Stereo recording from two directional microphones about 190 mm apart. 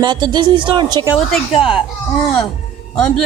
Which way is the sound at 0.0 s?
25° right (ahead or behind).